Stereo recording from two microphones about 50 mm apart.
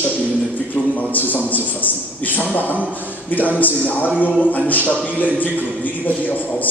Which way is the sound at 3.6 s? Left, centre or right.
Left.